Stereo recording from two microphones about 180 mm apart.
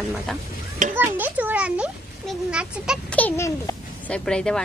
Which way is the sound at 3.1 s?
10° left (ahead or behind).